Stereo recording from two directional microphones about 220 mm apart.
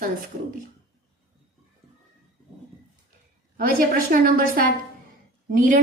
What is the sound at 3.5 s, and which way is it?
A woman's voice, 40° right (ahead or behind).